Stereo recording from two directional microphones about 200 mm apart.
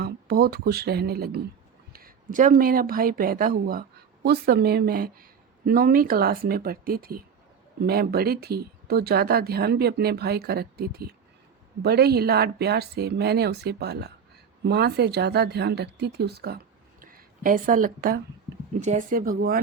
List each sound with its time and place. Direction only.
0.0 s speech: 50° right (ahead or behind)